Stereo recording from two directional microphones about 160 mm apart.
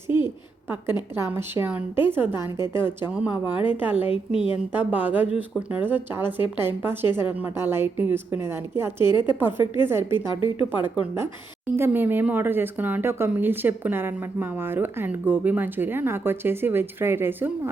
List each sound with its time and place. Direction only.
1.3 s speech: 10° right (ahead or behind)
4.1 s a woman's voice: 35° left (ahead or behind)
4.5 s speech: 10° right (ahead or behind)
10.2 s a woman's voice: 30° left (ahead or behind)
10.8 s speech: 10° right (ahead or behind)